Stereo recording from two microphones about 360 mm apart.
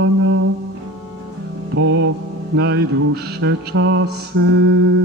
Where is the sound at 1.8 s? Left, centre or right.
Right.